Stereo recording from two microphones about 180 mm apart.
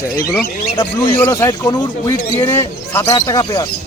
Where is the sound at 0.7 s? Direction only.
25° left (ahead or behind).